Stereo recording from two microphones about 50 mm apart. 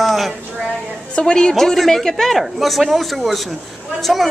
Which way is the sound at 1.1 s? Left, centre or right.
Centre.